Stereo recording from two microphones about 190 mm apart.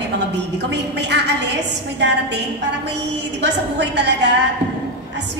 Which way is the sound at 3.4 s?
65° right (ahead or behind).